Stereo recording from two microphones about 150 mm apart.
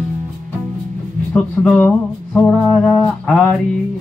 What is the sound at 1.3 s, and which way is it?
Music, 5° left (ahead or behind).